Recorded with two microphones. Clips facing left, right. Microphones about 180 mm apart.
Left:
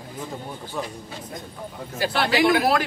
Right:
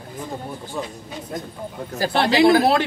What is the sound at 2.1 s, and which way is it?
Speech, 25° right (ahead or behind).